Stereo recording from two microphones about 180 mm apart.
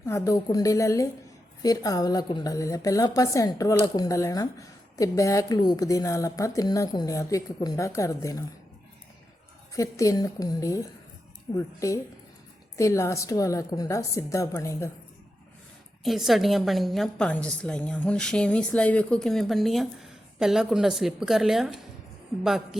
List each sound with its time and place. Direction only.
0.0 s a woman's voice: 15° left (ahead or behind)
9.7 s a woman's voice: 20° left (ahead or behind)
16.0 s a woman's voice: centre (ahead or behind)